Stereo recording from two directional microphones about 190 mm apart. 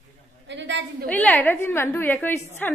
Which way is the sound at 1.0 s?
10° left (ahead or behind).